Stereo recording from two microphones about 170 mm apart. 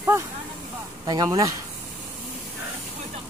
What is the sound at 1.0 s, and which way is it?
Speech, 25° right (ahead or behind).